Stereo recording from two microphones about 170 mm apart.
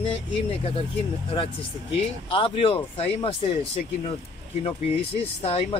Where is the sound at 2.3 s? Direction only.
30° left (ahead or behind).